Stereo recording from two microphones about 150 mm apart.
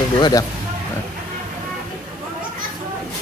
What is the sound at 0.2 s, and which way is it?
Speech, 25° left (ahead or behind).